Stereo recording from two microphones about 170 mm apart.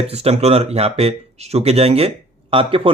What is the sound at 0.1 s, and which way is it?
Speech, 40° right (ahead or behind).